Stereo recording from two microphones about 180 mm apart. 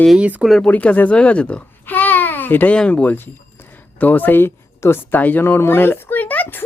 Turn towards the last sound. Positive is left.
turn(degrees=10)  # may be behind; listen again after turning